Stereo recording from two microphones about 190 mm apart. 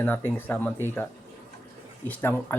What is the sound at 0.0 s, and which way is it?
Speech, 10° left (ahead or behind).